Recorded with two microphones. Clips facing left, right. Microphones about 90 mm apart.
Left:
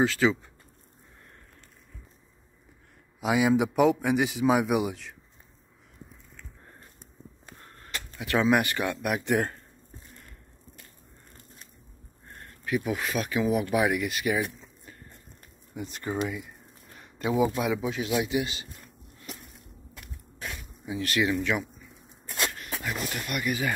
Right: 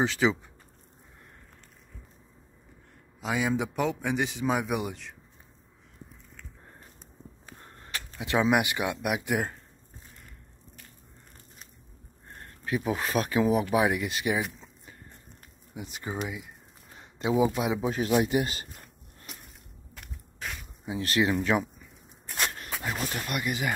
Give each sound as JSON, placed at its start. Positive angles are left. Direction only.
{"t": 0.0, "sound": "speech", "side_deg": -20}
{"t": 3.2, "sound": "a man's voice", "side_deg": 10}
{"t": 7.6, "sound": "speech", "side_deg": -20}
{"t": 12.4, "sound": "speech", "side_deg": -30}
{"t": 16.9, "sound": "speech", "side_deg": -25}
{"t": 17.8, "sound": "a man's voice", "side_deg": -40}
{"t": 20.8, "sound": "speech", "side_deg": -30}